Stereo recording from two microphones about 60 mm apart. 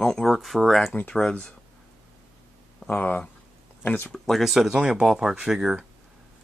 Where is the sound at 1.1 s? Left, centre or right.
Centre.